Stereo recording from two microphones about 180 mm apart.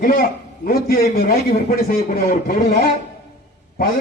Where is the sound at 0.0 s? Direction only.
50° left (ahead or behind).